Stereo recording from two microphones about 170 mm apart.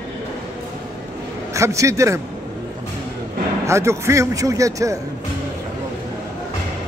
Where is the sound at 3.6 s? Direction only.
15° right (ahead or behind).